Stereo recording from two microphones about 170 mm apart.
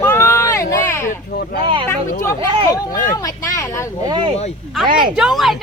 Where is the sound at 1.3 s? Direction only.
80° left.